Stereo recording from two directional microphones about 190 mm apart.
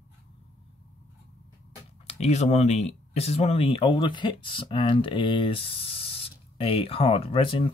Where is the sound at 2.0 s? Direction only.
35° left (ahead or behind).